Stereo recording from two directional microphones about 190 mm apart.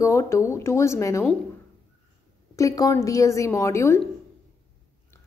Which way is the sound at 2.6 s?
15° left (ahead or behind).